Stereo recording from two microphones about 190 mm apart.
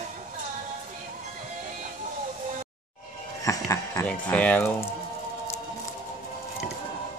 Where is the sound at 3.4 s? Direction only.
15° left (ahead or behind).